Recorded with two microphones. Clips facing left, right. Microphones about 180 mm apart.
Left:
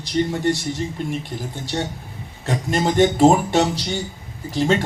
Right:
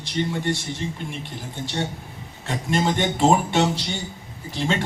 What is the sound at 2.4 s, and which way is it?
Speech, 40° left (ahead or behind).